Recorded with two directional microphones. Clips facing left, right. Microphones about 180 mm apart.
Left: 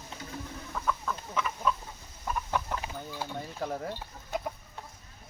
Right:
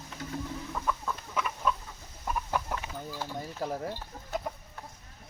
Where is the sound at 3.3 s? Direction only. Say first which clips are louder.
Right 1 dB; 5° right (ahead or behind).